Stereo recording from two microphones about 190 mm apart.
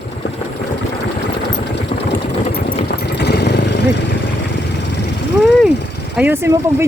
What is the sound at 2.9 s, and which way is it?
Vehicle, 60° left (ahead or behind).